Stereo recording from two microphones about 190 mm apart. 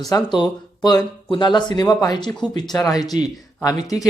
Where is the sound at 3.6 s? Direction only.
20° left (ahead or behind).